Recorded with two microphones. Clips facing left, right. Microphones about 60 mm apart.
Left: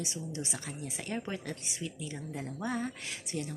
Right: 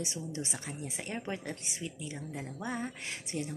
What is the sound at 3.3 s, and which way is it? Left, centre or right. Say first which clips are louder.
Speech: even; right.